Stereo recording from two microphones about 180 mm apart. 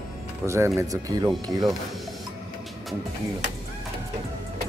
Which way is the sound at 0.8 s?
20° right (ahead or behind).